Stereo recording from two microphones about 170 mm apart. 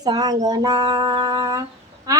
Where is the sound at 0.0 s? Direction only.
25° right (ahead or behind).